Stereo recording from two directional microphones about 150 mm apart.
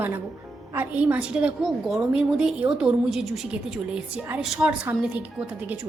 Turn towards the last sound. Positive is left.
turn(degrees=-10)  # may be behind; listen again after turning